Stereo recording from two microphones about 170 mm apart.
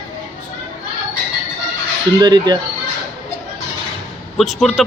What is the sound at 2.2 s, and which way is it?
Speech, 25° right (ahead or behind).